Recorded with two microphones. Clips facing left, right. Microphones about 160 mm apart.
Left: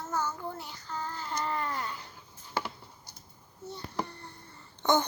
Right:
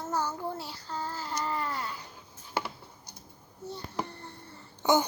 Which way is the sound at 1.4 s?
5° right (ahead or behind).